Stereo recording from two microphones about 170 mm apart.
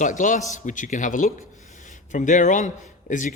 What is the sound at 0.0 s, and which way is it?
Speech, 50° left (ahead or behind).